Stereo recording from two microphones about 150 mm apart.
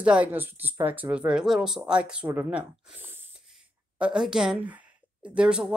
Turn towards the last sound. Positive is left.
turn(degrees=-5)  # may be behind; listen again after turning